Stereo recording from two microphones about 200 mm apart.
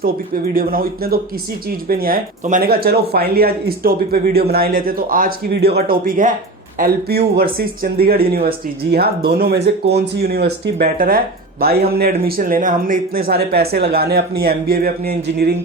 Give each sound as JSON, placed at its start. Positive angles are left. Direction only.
{"t": 0.0, "sound": "speech", "side_deg": -45}